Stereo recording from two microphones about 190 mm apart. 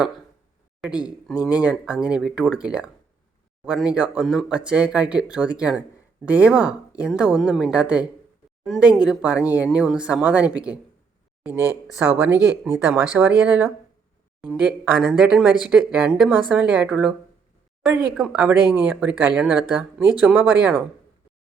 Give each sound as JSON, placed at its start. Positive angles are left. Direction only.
{"t": 0.8, "sound": "speech", "side_deg": -5}
{"t": 18.2, "sound": "speech", "side_deg": -5}
{"t": 18.6, "sound": "speech", "side_deg": 20}
{"t": 18.9, "sound": "speech", "side_deg": -10}